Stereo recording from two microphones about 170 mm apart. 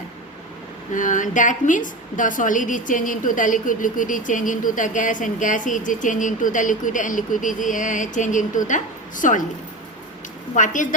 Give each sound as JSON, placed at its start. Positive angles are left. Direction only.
{"t": 0.9, "sound": "a woman's voice", "side_deg": 50}
{"t": 10.5, "sound": "a woman's voice", "side_deg": 50}